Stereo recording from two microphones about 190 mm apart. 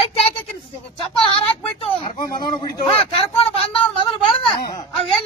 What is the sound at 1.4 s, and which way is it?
Speech, 25° left (ahead or behind).